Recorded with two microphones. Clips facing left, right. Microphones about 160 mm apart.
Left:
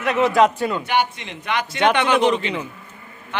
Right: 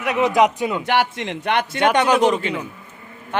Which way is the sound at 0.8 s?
90° right.